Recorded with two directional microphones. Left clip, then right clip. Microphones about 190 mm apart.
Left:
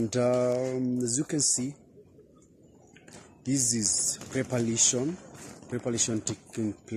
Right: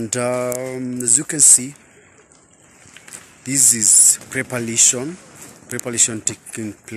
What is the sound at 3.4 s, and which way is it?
Speech, 5° left (ahead or behind).